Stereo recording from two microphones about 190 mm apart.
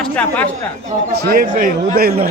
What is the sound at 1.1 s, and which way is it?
A man's voice, 55° right (ahead or behind).